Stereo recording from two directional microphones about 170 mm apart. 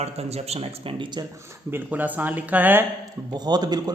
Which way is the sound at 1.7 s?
10° right (ahead or behind).